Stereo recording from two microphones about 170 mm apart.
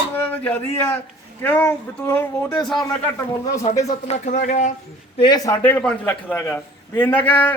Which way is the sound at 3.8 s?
45° left (ahead or behind).